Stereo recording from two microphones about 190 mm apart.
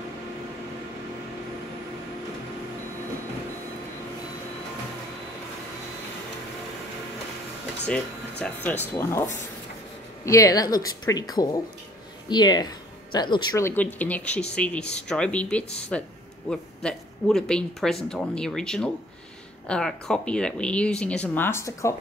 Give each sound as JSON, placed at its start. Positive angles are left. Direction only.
{"t": 7.8, "sound": "speech", "side_deg": 5}
{"t": 8.9, "sound": "a woman's voice", "side_deg": 15}